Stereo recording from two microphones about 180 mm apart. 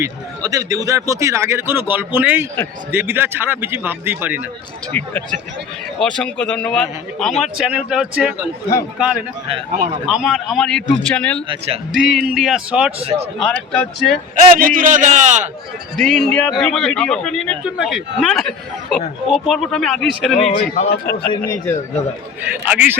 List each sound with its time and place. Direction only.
0.0 s a man's voice: 20° right (ahead or behind)
4.9 s a man's voice: 10° left (ahead or behind)
11.4 s speech: 35° right (ahead or behind)
11.9 s a man's voice: centre (ahead or behind)
13.0 s speech: 30° right (ahead or behind)
13.4 s a man's voice: 5° left (ahead or behind)
14.3 s a man's voice: 50° right (ahead or behind)
16.0 s a man's voice: centre (ahead or behind)
20.4 s speech: 40° left (ahead or behind)
21.4 s a man's voice: 20° left (ahead or behind)
22.4 s a man's voice: 10° right (ahead or behind)